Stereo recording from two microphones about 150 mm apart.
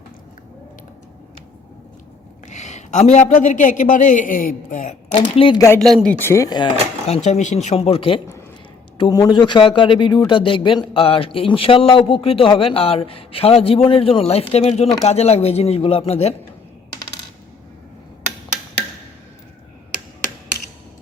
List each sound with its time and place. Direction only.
2.5 s a woman's voice: 50° left (ahead or behind)
5.1 s a man's voice: 35° left (ahead or behind)
5.5 s speech: 20° left (ahead or behind)
7.3 s speech: 50° left (ahead or behind)
9.0 s a man's voice: 25° left (ahead or behind); by 16.3 s 45° left (ahead or behind)